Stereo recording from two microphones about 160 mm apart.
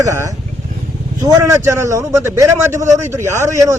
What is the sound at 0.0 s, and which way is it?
A man's voice, 20° right (ahead or behind).